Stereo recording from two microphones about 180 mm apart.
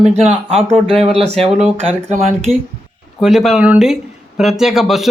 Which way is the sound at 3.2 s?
Centre (ahead or behind).